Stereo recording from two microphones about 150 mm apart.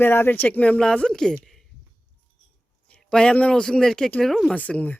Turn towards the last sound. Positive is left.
turn(degrees=10)  # may be behind; listen again after turning